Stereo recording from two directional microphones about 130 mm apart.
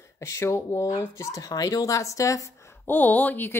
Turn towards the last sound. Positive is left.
turn(degrees=15)  # may be behind; listen again after turning